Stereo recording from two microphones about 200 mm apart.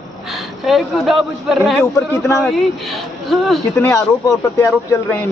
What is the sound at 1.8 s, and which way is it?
Speech, 10° left (ahead or behind).